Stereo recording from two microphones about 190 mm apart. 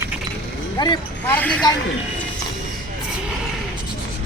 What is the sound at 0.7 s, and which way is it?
Speech, 20° left (ahead or behind).